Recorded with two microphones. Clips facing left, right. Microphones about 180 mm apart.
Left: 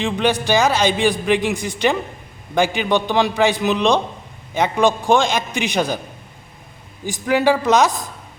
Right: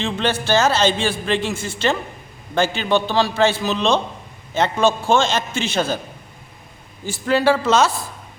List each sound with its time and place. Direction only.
0.0 s a man's voice: 15° left (ahead or behind)
7.0 s a man's voice: 15° left (ahead or behind)